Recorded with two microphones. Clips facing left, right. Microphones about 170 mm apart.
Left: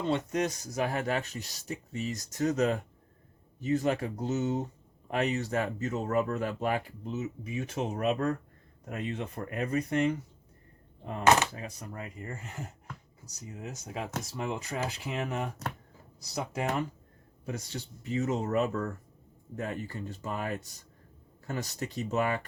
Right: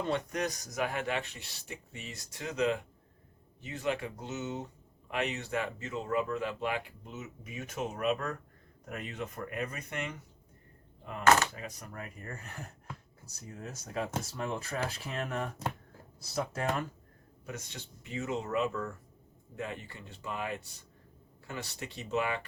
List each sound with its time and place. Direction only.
0.1 s speech: 25° left (ahead or behind)
11.9 s speech: 20° left (ahead or behind)
17.4 s speech: 35° left (ahead or behind)